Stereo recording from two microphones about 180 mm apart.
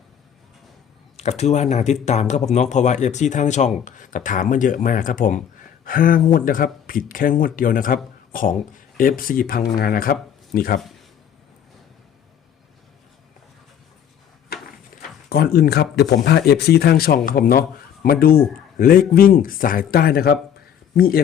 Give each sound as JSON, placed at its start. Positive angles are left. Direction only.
{"t": 1.1, "sound": "speech", "side_deg": 40}
{"t": 15.3, "sound": "speech", "side_deg": 60}